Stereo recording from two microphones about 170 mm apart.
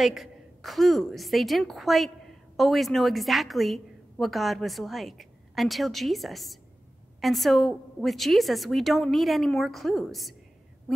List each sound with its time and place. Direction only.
0.0 s a woman's voice: centre (ahead or behind)